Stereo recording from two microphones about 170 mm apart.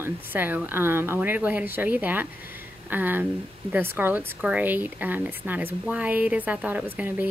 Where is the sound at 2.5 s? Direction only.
10° right (ahead or behind).